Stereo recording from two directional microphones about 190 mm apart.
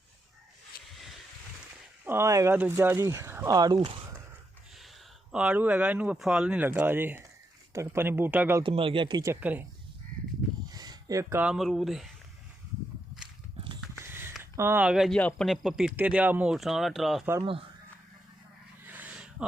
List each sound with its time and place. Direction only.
0.7 s a sound: 50° left (ahead or behind)
2.0 s speech: 15° right (ahead or behind)
5.3 s speech: 5° right (ahead or behind)
8.6 s speech: 30° right (ahead or behind); by 9.6 s 10° right (ahead or behind)
10.7 s speech: 20° right (ahead or behind); by 12.1 s centre (ahead or behind)
14.0 s speech: 10° right (ahead or behind)
18.9 s a sound: 10° right (ahead or behind)